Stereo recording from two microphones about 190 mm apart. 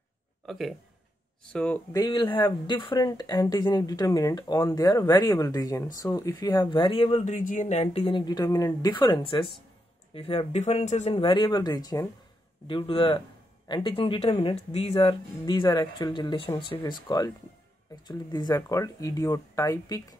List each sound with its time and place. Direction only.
0.5 s speech: centre (ahead or behind)
1.9 s speech: 20° left (ahead or behind)